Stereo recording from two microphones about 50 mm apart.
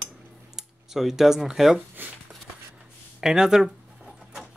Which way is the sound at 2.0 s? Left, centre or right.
Right.